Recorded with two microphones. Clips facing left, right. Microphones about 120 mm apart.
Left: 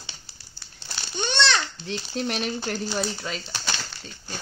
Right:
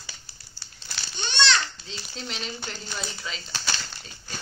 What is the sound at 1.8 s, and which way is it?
Speech, 55° left (ahead or behind).